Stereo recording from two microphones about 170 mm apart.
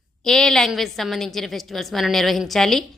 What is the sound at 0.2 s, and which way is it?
A woman's voice, 5° left (ahead or behind).